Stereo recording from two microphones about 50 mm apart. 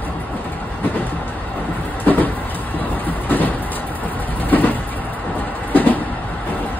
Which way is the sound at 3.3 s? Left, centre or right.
Left.